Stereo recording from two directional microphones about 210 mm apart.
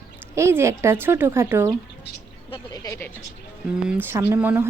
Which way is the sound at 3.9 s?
10° right (ahead or behind).